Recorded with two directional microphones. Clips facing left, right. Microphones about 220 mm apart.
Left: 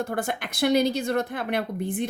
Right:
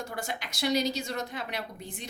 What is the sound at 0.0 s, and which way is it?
A woman's voice, 55° left (ahead or behind).